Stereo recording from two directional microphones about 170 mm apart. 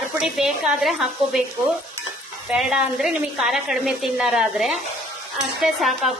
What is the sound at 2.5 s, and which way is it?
A woman's voice, 5° right (ahead or behind).